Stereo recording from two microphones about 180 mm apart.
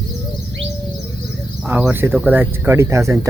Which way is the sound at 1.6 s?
10° right (ahead or behind).